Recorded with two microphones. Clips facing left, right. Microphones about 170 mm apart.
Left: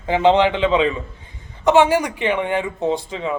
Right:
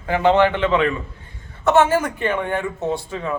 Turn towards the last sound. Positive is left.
turn(degrees=20)  # may be behind; listen again after turning